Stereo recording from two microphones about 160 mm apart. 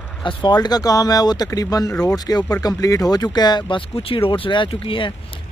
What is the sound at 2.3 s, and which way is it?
Speech, 25° left (ahead or behind).